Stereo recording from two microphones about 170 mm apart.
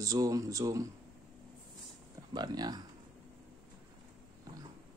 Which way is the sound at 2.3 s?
25° right (ahead or behind).